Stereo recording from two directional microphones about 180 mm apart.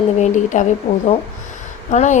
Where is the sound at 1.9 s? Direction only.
40° left (ahead or behind).